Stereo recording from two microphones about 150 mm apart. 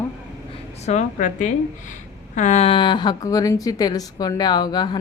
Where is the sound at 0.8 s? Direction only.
55° left (ahead or behind).